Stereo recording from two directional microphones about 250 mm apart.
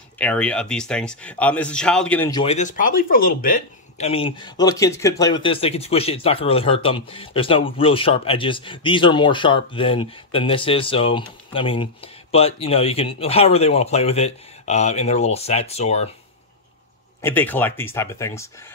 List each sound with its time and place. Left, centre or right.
0.2 s speech: centre
2.4 s speech: left
17.2 s speech: centre